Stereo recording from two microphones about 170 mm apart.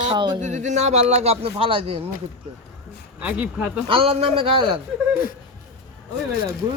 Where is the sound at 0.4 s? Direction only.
45° right (ahead or behind).